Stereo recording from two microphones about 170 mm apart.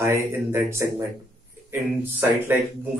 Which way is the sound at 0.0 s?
15° right (ahead or behind).